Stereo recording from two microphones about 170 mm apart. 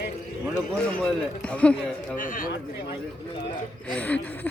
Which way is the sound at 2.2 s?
50° left (ahead or behind).